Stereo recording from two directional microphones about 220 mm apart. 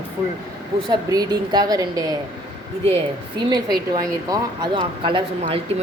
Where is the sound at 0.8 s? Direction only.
20° right (ahead or behind).